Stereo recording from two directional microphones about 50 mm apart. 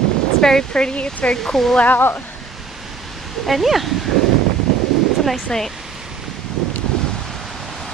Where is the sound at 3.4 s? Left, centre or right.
Centre.